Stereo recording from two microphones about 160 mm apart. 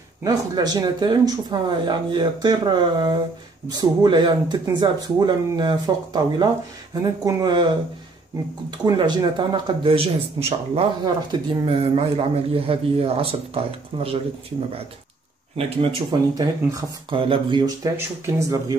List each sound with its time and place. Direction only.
0.2 s speech: 25° right (ahead or behind)
8.6 s a man's voice: 25° right (ahead or behind)
15.5 s a man's voice: 35° right (ahead or behind); by 18.6 s 15° right (ahead or behind)